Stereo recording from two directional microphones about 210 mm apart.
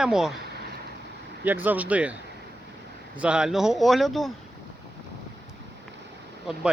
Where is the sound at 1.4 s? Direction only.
10° right (ahead or behind).